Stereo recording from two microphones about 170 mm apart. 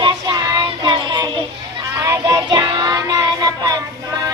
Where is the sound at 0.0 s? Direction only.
25° right (ahead or behind).